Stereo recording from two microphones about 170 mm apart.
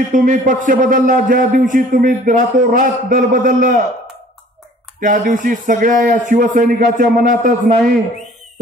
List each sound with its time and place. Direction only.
0.1 s speech: 50° right (ahead or behind)
5.0 s speech: 50° right (ahead or behind)